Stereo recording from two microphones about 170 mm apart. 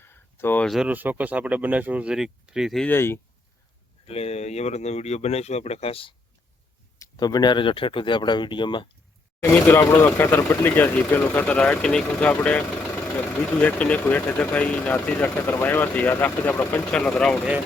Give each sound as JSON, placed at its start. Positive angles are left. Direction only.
{"t": 0.0, "sound": "a sound", "side_deg": 15}
{"t": 0.7, "sound": "speech", "side_deg": -5}
{"t": 2.8, "sound": "speech", "side_deg": 15}
{"t": 4.0, "sound": "speech", "side_deg": 35}
{"t": 9.4, "sound": "speech", "side_deg": 15}